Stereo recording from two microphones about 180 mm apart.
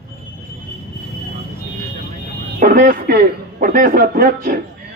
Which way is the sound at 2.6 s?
50° right (ahead or behind).